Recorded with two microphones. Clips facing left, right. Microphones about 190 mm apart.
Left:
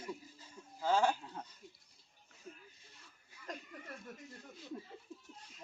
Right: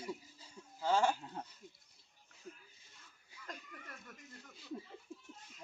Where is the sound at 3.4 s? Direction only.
25° left (ahead or behind).